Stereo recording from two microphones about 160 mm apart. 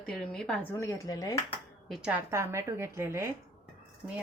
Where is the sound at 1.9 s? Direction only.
5° right (ahead or behind).